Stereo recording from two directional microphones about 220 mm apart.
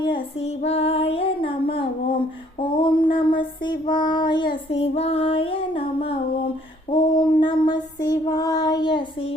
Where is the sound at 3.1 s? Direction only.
20° left (ahead or behind).